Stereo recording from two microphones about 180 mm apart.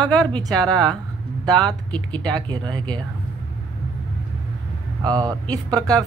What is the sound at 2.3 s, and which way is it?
Speech, 25° right (ahead or behind).